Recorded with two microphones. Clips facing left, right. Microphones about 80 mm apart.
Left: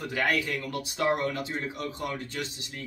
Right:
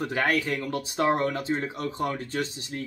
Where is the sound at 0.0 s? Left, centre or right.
Right.